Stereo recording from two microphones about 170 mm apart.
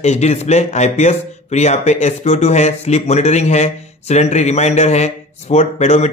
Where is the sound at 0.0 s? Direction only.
40° left (ahead or behind).